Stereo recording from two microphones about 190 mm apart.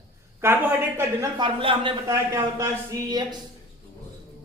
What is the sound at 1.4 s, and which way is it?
A man's voice, 25° right (ahead or behind).